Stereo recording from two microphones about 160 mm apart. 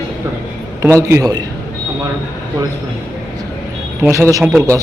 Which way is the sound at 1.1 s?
25° right (ahead or behind).